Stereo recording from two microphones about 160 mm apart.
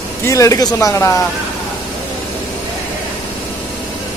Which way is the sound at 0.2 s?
20° left (ahead or behind).